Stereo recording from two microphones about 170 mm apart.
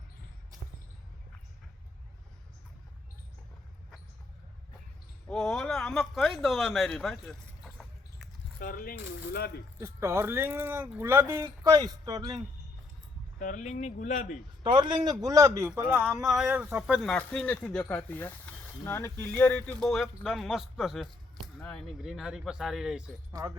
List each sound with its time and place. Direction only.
5.3 s speech: 5° left (ahead or behind)
8.5 s speech: 55° left (ahead or behind)
9.8 s speech: 15° right (ahead or behind)
13.4 s speech: 45° left (ahead or behind)
14.6 s a man's voice: 25° right (ahead or behind); by 23.0 s 5° right (ahead or behind)